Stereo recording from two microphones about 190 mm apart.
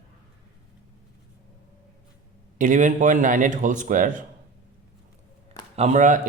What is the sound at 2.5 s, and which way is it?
A man's voice, 40° right (ahead or behind).